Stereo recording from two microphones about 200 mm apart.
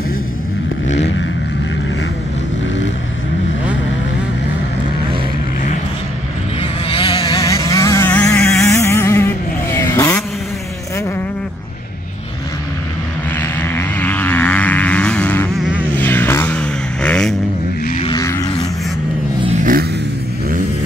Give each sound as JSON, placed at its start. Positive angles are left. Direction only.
{"t": 0.8, "sound": "vehicle", "side_deg": 35}
{"t": 6.9, "sound": "vehicle", "side_deg": 25}
{"t": 7.7, "sound": "vehicle", "side_deg": 15}
{"t": 13.4, "sound": "vehicle", "side_deg": 10}
{"t": 18.0, "sound": "a sound", "side_deg": 15}
{"t": 19.4, "sound": "a sound", "side_deg": -35}